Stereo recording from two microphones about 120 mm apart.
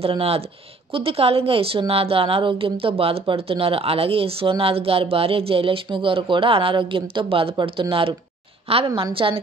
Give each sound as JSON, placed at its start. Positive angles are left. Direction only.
{"t": 0.0, "sound": "a woman's voice", "side_deg": -55}